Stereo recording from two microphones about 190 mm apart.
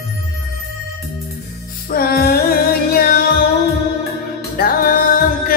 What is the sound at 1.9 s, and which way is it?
Music, 50° left (ahead or behind).